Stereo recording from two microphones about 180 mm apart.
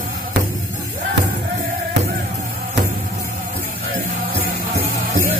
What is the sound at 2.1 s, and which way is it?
Music, 55° right (ahead or behind).